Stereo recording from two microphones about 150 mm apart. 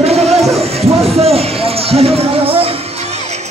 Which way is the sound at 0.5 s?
45° right (ahead or behind).